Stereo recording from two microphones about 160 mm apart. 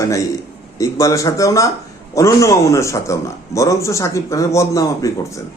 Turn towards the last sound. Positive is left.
turn(degrees=20)  # may be behind; listen again after turning